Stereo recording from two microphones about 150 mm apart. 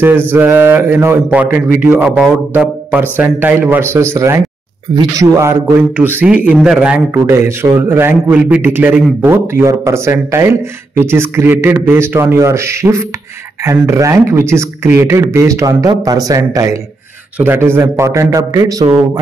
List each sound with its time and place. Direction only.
0.3 s speech: 15° right (ahead or behind)